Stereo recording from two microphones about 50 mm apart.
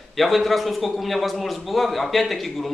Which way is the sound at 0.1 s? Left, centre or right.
Centre.